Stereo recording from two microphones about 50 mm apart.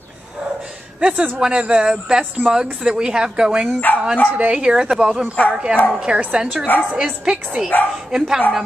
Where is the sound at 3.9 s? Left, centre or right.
Left.